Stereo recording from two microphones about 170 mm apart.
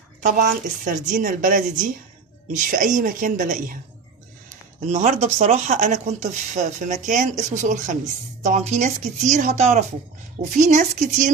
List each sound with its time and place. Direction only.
0.2 s speech: 50° right (ahead or behind)
4.9 s speech: 45° right (ahead or behind)